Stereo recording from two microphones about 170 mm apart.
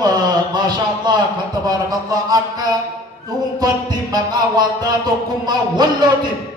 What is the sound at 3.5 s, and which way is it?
Music, 25° right (ahead or behind).